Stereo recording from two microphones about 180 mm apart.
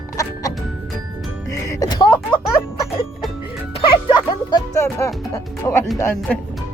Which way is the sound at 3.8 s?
25° left (ahead or behind).